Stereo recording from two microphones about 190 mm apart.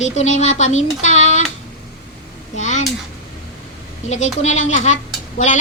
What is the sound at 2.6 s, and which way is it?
Speech, 40° left (ahead or behind).